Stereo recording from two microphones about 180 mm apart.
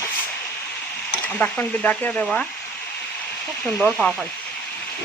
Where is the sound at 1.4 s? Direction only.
10° left (ahead or behind).